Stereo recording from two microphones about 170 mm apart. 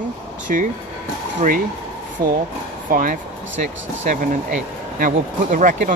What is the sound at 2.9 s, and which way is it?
Speech, 55° right (ahead or behind).